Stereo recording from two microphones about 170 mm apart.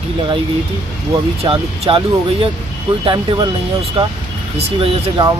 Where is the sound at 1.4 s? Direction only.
30° right (ahead or behind).